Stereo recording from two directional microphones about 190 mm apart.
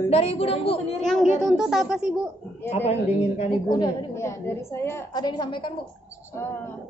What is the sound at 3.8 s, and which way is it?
A woman's voice, 15° left (ahead or behind).